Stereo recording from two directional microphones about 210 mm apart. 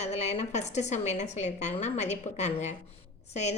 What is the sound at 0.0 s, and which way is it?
A woman's voice, 30° left (ahead or behind).